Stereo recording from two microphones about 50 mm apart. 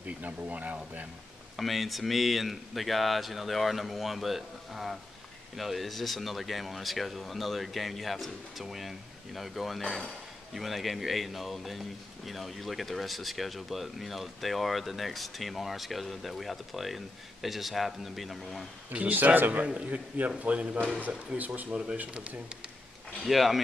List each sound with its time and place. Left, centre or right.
0.0 s speech: right
1.6 s a man's voice: centre
19.1 s a man's voice: right
21.3 s speech: centre
23.2 s a man's voice: centre